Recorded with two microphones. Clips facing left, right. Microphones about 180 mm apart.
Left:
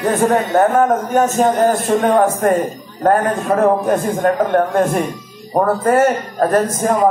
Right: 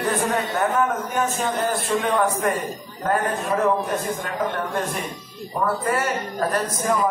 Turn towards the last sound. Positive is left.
turn(degrees=45)  # may be behind; listen again after turning